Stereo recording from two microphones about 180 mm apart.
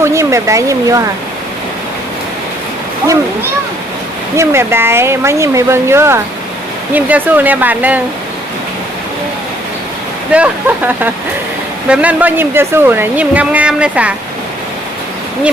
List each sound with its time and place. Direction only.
0.0 s a woman's voice: 15° right (ahead or behind)
4.4 s a woman's voice: 15° right (ahead or behind)
10.3 s a woman's voice: 10° right (ahead or behind)